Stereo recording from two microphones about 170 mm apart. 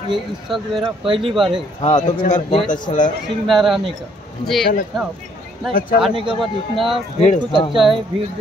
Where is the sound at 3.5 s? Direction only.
Centre (ahead or behind).